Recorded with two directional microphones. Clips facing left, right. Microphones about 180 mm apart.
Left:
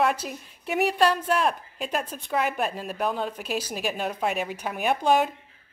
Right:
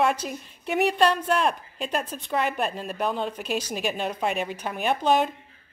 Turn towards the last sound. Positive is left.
turn(degrees=10)  # may be behind; listen again after turning